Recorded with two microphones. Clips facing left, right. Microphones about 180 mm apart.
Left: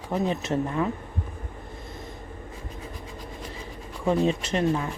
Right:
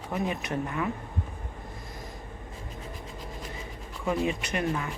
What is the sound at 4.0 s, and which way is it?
Speech, 30° left (ahead or behind).